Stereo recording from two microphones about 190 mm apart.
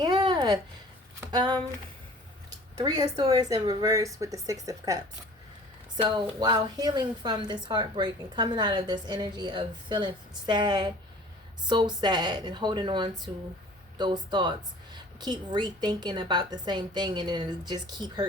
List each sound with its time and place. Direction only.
0.0 s a sound: 20° right (ahead or behind)
1.3 s a woman's voice: 20° right (ahead or behind)
2.7 s a woman's voice: 20° right (ahead or behind)
6.4 s a woman's voice: 20° right (ahead or behind)